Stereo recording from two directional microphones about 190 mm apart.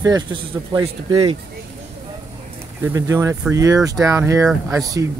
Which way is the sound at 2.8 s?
15° right (ahead or behind).